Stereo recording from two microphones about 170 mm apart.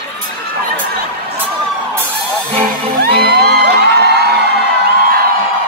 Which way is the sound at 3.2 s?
65° right (ahead or behind).